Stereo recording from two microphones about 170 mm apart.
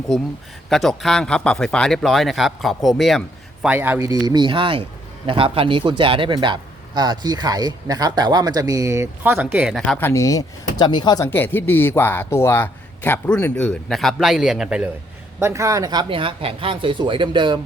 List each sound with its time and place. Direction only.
0.7 s speech: centre (ahead or behind)
3.7 s a man's voice: 10° right (ahead or behind)
10.0 s speech: 20° left (ahead or behind); by 14.8 s 5° right (ahead or behind)
15.4 s a man's voice: 15° right (ahead or behind)